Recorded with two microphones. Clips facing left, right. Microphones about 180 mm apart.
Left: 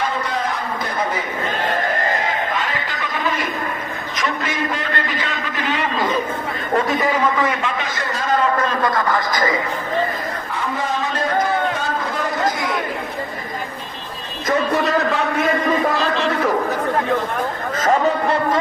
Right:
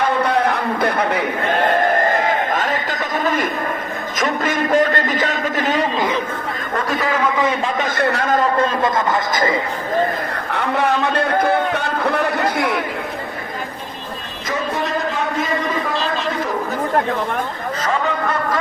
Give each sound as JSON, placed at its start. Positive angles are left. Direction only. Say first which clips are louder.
{"t": 0.0, "sound": "a sound", "louder": "right 6 dB", "side_deg": -60}
{"t": 2.0, "sound": "a sound", "louder": "right 4 dB", "side_deg": -50}
{"t": 4.2, "sound": "a man's voice", "louder": "right 4 dB", "side_deg": -45}
{"t": 7.6, "sound": "a man's voice", "louder": "right 5 dB", "side_deg": -50}
{"t": 8.5, "sound": "speech", "louder": "right 2 dB", "side_deg": -25}
{"t": 10.5, "sound": "a man's voice", "louder": "right 6 dB", "side_deg": -65}